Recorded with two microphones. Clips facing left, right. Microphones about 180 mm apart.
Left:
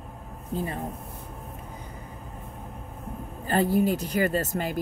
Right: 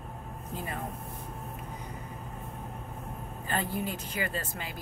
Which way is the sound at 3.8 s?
40° left (ahead or behind).